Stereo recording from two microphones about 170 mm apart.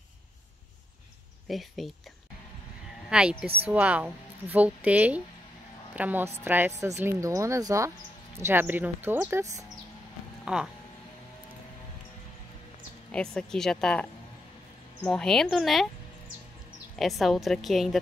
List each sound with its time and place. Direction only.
1.5 s a woman's voice: centre (ahead or behind)
3.1 s a woman's voice: 5° right (ahead or behind)
10.4 s speech: 5° right (ahead or behind)
13.1 s a woman's voice: 5° left (ahead or behind)
15.0 s a woman's voice: 5° left (ahead or behind)
16.9 s a woman's voice: centre (ahead or behind)